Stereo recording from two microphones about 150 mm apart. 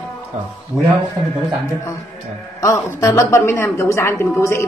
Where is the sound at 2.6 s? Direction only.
20° left (ahead or behind).